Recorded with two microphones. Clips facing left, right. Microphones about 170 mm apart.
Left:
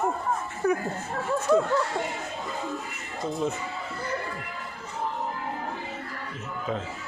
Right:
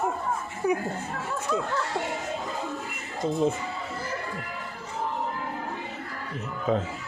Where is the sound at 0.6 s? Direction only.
15° right (ahead or behind).